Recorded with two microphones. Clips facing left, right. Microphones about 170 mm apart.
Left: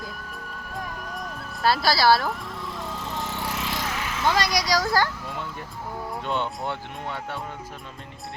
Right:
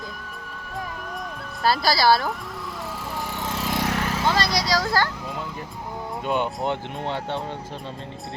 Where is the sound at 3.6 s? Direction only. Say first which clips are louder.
Right 5 dB; 40° right (ahead or behind).